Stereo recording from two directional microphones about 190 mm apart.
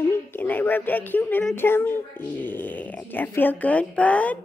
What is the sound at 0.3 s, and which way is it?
Speech, 10° left (ahead or behind).